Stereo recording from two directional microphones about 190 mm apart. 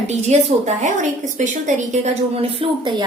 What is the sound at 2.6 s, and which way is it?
Speech, 30° right (ahead or behind).